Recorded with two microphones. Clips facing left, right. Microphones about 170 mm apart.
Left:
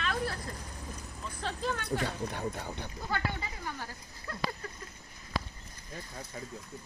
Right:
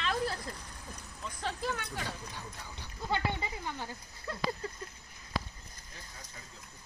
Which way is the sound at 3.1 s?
25° right (ahead or behind).